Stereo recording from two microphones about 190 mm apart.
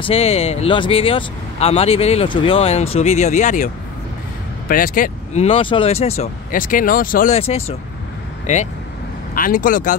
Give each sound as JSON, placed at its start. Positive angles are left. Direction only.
{"t": 0.0, "sound": "speech", "side_deg": 30}
{"t": 6.5, "sound": "speech", "side_deg": 45}
{"t": 7.3, "sound": "speech", "side_deg": 30}